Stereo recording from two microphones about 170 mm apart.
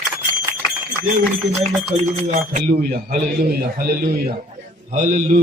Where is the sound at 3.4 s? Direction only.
60° right (ahead or behind).